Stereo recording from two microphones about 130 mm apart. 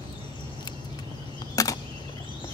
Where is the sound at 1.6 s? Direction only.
25° left (ahead or behind).